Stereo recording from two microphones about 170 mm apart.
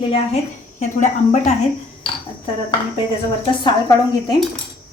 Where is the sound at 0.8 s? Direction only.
45° left (ahead or behind).